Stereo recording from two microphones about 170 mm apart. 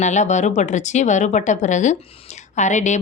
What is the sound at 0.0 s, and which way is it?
A woman's voice, 45° left (ahead or behind).